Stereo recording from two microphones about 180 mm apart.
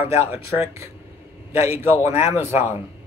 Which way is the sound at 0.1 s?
15° right (ahead or behind).